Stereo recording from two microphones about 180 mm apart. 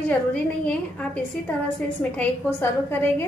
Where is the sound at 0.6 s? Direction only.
5° left (ahead or behind).